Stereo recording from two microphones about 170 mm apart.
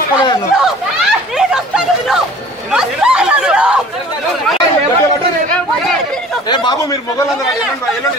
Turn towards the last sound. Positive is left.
turn(degrees=25)  # may be behind; listen again after turning